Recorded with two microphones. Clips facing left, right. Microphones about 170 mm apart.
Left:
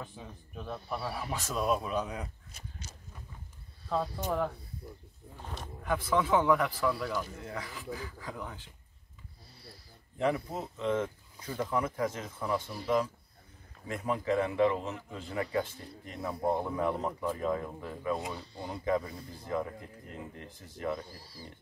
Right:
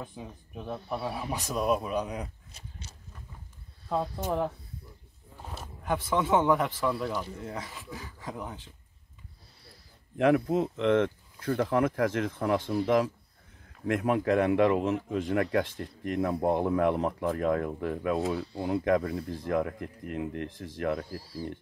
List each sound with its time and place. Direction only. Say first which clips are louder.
0.0 s a man's voice: right 3 dB; 15° right (ahead or behind)
2.5 s a sound: even; 35° right (ahead or behind)
5.4 s a sound: right 1 dB; 5° right (ahead or behind)
5.9 s a man's voice: right 1 dB; 25° right (ahead or behind)
10.1 s speech: right 7 dB; 65° right (ahead or behind); by 13.1 s 90° right
13.8 s speech: right 6 dB; 70° right (ahead or behind)
21.2 s speech: right 11 dB; centre (ahead or behind)